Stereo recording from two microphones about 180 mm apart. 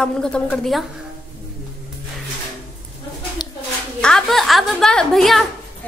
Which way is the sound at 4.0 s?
5° left (ahead or behind).